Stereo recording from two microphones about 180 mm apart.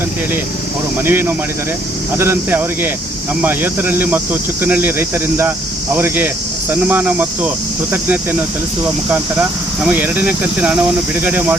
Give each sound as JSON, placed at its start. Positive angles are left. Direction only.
{"t": 1.0, "sound": "speech", "side_deg": -10}